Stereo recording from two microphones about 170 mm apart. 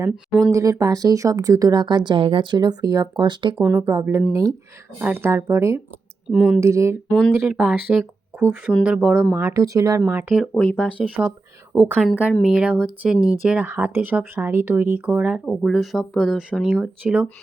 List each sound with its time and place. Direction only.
0.5 s speech: 20° right (ahead or behind)
3.6 s speech: 15° right (ahead or behind)
6.3 s speech: 5° right (ahead or behind)
6.6 s speech: 15° right (ahead or behind)
7.1 s speech: 5° left (ahead or behind)
9.3 s speech: 15° right (ahead or behind)
10.0 s speech: 10° right (ahead or behind); by 10.9 s 5° left (ahead or behind)
10.9 s speech: 5° right (ahead or behind)